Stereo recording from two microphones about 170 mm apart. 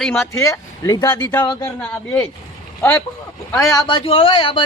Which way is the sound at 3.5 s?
25° left (ahead or behind).